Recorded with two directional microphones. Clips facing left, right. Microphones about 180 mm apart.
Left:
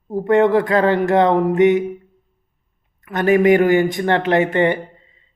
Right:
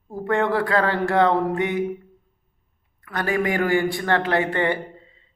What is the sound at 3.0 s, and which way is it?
Speech, 20° left (ahead or behind).